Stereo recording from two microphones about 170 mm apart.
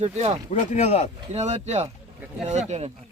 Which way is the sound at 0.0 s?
40° right (ahead or behind).